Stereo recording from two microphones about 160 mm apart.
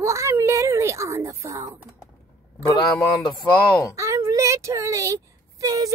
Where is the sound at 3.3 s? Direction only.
20° left (ahead or behind).